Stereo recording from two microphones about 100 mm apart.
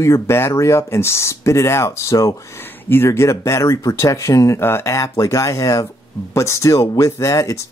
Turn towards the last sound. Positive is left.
turn(degrees=30)  # may be behind; listen again after turning